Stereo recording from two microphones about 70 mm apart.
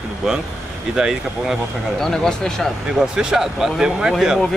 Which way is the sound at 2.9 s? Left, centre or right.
Centre.